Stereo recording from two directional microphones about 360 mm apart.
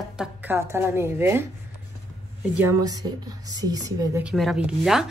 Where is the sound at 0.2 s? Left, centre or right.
Centre.